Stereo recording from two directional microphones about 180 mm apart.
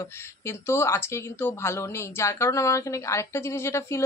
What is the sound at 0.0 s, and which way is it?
Speech, 15° left (ahead or behind).